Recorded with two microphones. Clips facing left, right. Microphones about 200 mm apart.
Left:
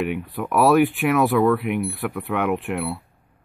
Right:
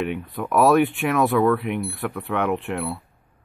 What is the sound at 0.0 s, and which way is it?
Speech, 10° left (ahead or behind).